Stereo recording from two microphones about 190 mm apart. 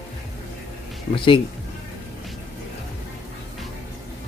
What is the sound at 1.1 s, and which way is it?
Speech, 25° left (ahead or behind).